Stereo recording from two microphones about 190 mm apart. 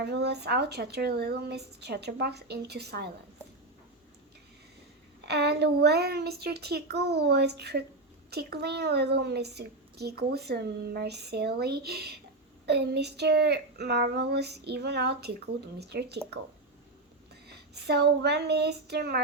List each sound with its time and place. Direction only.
0.0 s a child's voice: 60° right (ahead or behind)
5.2 s a child's voice: 60° right (ahead or behind)
17.5 s a child's voice: 60° right (ahead or behind)